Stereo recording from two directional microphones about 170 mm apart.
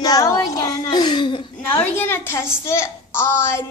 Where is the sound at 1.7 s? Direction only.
10° left (ahead or behind).